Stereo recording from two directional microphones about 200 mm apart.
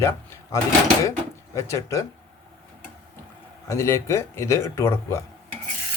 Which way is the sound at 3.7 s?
15° left (ahead or behind).